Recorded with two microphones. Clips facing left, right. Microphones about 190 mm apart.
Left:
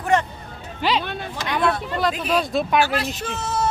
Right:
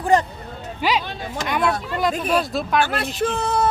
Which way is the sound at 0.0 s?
35° right (ahead or behind).